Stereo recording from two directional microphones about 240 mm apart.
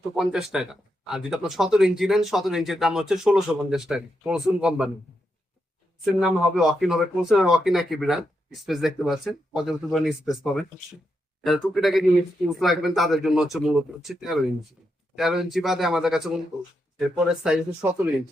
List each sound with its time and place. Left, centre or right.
0.2 s speech: centre
6.1 s speech: centre